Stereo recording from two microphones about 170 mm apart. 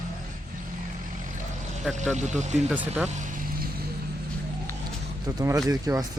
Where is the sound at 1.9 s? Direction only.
45° right (ahead or behind).